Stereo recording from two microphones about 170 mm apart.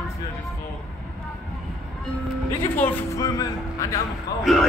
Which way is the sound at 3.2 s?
20° left (ahead or behind).